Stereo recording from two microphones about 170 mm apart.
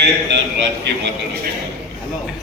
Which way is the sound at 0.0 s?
90° right.